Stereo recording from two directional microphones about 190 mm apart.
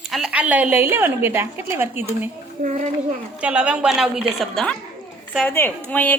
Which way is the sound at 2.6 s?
45° right (ahead or behind).